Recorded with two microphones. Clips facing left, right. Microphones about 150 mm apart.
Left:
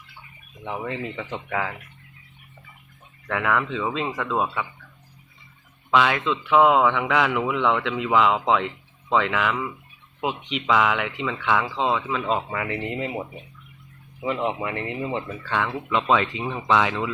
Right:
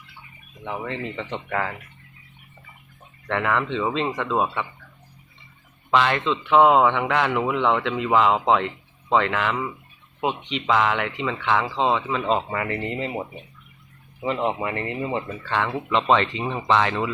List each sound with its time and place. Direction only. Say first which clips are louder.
0.6 s speech: even; 5° left (ahead or behind)
3.2 s speech: right 1 dB; centre (ahead or behind)
4.3 s speech: right 1 dB; 10° right (ahead or behind)
5.9 s speech: even; 5° left (ahead or behind)
14.2 s speech: right 1 dB; centre (ahead or behind)